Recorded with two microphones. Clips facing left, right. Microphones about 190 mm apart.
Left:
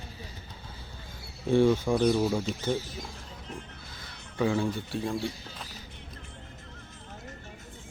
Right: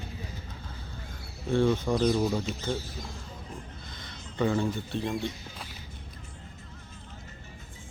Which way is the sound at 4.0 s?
5° left (ahead or behind).